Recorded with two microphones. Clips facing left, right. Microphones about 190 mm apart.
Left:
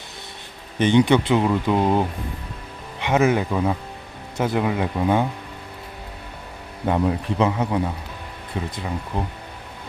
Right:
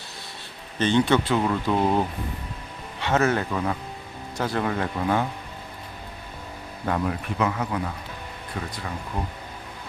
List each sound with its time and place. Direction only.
0.8 s speech: 15° left (ahead or behind)
6.8 s speech: 20° left (ahead or behind)